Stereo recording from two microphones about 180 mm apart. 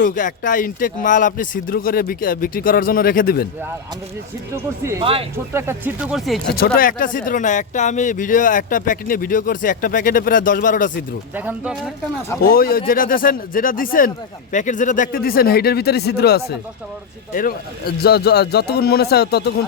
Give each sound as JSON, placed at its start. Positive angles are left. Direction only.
{"t": 0.0, "sound": "speech", "side_deg": 45}
{"t": 5.5, "sound": "speech", "side_deg": -10}
{"t": 6.7, "sound": "speech", "side_deg": 50}
{"t": 11.3, "sound": "speech", "side_deg": -10}
{"t": 12.4, "sound": "a man's voice", "side_deg": 55}